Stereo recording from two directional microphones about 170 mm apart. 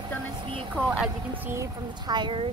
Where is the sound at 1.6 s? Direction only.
25° right (ahead or behind).